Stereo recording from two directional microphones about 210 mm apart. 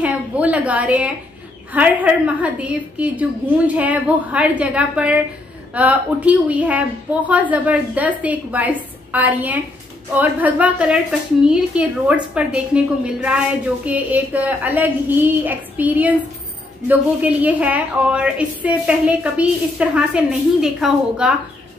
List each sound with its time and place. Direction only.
0.0 s a woman's voice: 5° right (ahead or behind)